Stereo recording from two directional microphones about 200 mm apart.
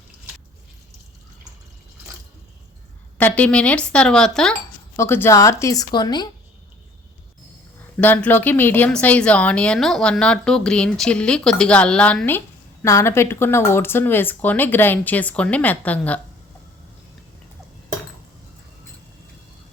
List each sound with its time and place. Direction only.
3.2 s a woman's voice: 10° left (ahead or behind)
8.0 s a woman's voice: 10° left (ahead or behind)